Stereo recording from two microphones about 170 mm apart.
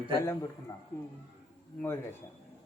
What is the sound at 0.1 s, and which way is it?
Speech, 15° left (ahead or behind).